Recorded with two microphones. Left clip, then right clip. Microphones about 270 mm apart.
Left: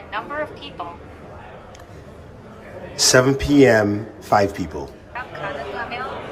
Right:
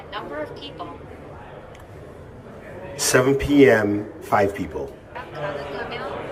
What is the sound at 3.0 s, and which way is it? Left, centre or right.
A man's voice, centre.